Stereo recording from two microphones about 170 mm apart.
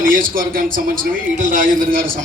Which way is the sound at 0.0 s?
55° right (ahead or behind).